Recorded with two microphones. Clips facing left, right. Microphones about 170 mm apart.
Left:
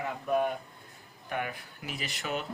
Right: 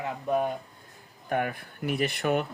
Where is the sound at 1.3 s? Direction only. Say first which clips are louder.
Right 6 dB; 45° right (ahead or behind).